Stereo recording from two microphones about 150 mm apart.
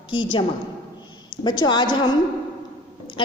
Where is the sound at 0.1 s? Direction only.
35° left (ahead or behind).